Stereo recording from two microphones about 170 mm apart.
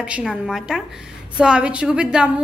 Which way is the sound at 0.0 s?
5° right (ahead or behind).